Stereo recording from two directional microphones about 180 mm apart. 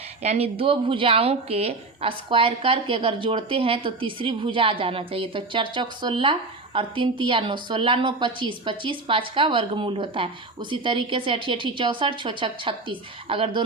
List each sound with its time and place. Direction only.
0.2 s a woman's voice: 35° right (ahead or behind)